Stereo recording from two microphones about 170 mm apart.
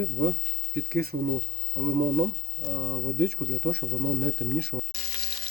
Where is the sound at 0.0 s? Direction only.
65° right (ahead or behind).